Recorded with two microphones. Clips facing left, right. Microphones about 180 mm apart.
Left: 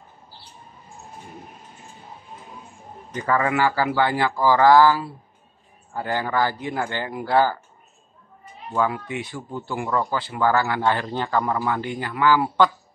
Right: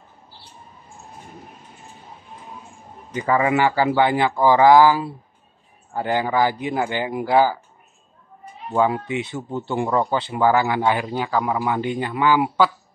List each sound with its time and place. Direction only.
3.2 s speech: 15° right (ahead or behind)
8.7 s speech: 20° right (ahead or behind)